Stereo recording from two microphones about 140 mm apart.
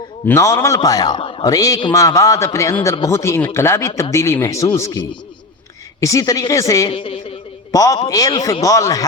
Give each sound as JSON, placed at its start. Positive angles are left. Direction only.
{"t": 0.3, "sound": "a man's voice", "side_deg": 20}
{"t": 1.5, "sound": "a man's voice", "side_deg": 25}
{"t": 6.9, "sound": "a sound", "side_deg": 35}
{"t": 7.7, "sound": "a man's voice", "side_deg": 25}